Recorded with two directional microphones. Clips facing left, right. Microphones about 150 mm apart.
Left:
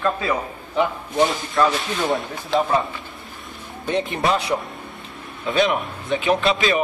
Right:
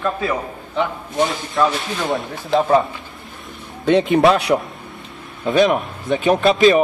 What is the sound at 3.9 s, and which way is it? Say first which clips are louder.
Speech: right 8 dB; 75° right (ahead or behind).